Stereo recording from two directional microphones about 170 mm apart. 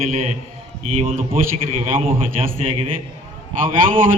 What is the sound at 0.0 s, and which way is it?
Speech, 40° right (ahead or behind).